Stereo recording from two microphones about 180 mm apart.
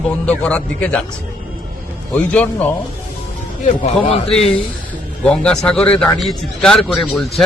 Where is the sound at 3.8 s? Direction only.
35° left (ahead or behind).